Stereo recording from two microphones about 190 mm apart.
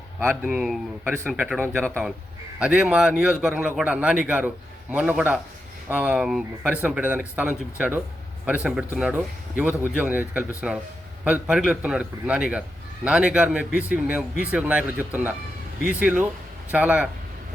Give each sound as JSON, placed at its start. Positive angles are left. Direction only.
{"t": 0.2, "sound": "a man's voice", "side_deg": -10}